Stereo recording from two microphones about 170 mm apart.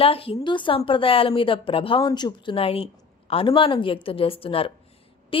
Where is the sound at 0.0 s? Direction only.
35° left (ahead or behind).